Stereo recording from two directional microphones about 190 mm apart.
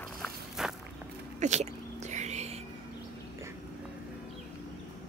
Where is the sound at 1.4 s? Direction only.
35° right (ahead or behind).